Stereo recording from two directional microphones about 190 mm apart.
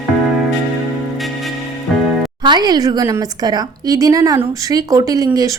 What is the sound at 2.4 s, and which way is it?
Speech, 20° right (ahead or behind).